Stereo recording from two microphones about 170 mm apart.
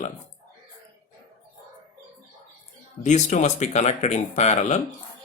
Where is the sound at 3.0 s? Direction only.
45° left (ahead or behind).